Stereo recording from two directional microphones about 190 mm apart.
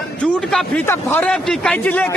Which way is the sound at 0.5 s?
10° left (ahead or behind).